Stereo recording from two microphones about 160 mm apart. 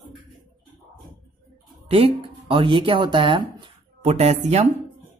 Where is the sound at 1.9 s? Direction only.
35° right (ahead or behind).